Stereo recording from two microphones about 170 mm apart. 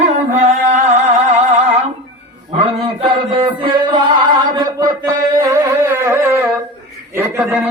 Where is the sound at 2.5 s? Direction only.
30° right (ahead or behind).